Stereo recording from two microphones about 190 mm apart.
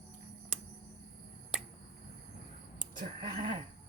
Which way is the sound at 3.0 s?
45° right (ahead or behind).